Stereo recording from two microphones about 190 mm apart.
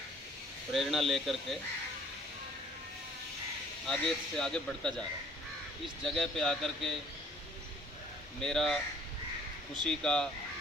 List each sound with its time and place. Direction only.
0.7 s a man's voice: centre (ahead or behind)
3.8 s a man's voice: 5° left (ahead or behind)
6.1 s a man's voice: centre (ahead or behind)
8.4 s a man's voice: centre (ahead or behind)
9.8 s a man's voice: 5° left (ahead or behind)